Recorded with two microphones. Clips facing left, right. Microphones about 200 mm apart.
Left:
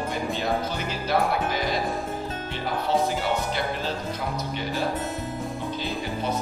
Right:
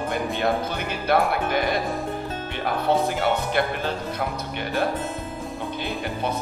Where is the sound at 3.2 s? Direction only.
60° right (ahead or behind).